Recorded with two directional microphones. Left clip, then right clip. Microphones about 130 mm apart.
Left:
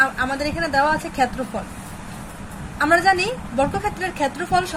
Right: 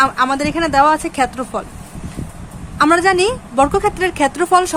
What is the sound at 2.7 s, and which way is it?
A woman's voice, 80° right.